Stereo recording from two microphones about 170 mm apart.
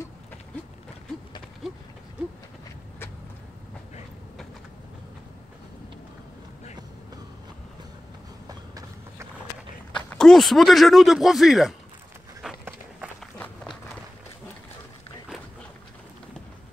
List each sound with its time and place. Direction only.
8.5 s a sound: 20° right (ahead or behind)
9.9 s speech: 5° left (ahead or behind)
12.4 s run: 5° right (ahead or behind)